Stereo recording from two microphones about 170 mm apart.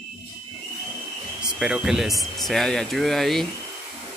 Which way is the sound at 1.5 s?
5° right (ahead or behind).